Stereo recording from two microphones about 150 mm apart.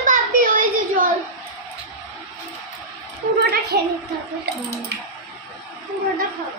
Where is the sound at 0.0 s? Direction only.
60° right (ahead or behind).